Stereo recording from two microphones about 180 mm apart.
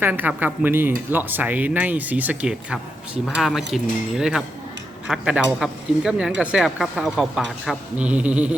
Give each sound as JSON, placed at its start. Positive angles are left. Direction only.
{"t": 0.0, "sound": "speech", "side_deg": -10}